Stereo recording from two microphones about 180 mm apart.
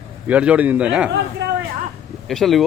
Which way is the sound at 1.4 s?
80° right.